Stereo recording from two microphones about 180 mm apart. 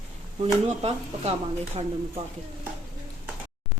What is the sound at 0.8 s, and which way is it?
A woman's voice, 30° right (ahead or behind).